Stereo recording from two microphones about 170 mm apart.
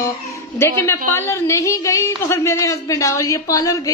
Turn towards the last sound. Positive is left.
turn(degrees=20)  # may be behind; listen again after turning